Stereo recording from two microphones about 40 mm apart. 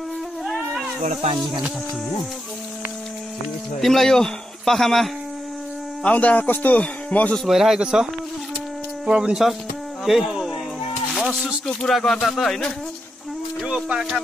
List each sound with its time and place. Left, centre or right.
3.8 s a man's voice: centre
6.0 s speech: left
6.5 s music: left
6.8 s speech: left
7.4 s speech: centre
10.0 s speech: centre
11.1 s a sound: centre
11.9 s a man's voice: centre
13.9 s speech: centre